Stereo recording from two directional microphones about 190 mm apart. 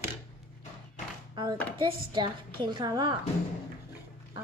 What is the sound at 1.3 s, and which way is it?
A woman's voice, 20° right (ahead or behind).